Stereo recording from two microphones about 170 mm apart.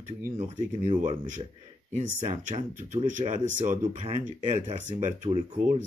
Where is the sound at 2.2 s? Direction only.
45° right (ahead or behind).